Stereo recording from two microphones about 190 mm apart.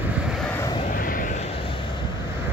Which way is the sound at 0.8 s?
45° left (ahead or behind).